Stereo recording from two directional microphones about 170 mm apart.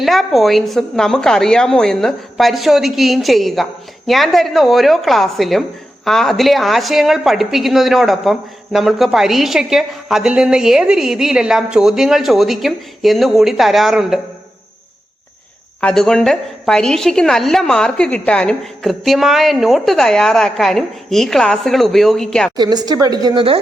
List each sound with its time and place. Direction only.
0.0 s speech: centre (ahead or behind)
15.8 s speech: 5° left (ahead or behind)
22.5 s a woman's voice: 25° right (ahead or behind)